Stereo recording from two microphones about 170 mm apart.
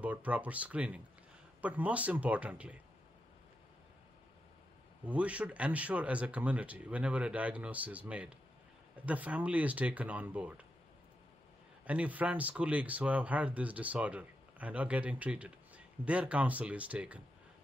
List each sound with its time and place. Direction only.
0.0 s speech: 10° right (ahead or behind)
5.0 s speech: 10° right (ahead or behind)
11.8 s speech: 10° right (ahead or behind)